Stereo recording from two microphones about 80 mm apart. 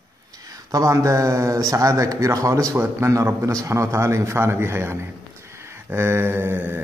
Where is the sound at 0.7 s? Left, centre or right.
Right.